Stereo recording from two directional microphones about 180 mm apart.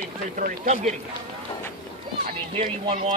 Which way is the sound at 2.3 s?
30° right (ahead or behind).